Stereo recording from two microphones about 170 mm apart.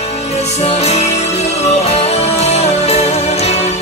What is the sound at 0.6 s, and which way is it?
Music, 40° left (ahead or behind).